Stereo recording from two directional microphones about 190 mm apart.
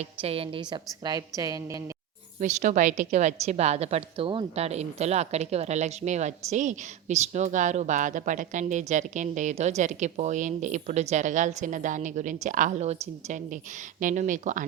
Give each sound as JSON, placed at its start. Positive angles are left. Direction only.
{"t": 0.0, "sound": "a woman's voice", "side_deg": -30}
{"t": 2.4, "sound": "a woman's voice", "side_deg": -40}